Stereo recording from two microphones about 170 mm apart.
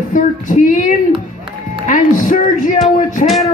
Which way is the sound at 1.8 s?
50° left (ahead or behind).